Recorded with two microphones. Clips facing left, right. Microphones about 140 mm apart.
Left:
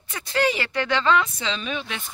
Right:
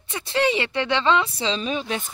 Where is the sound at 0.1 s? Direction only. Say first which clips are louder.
Right 1 dB; 25° right (ahead or behind).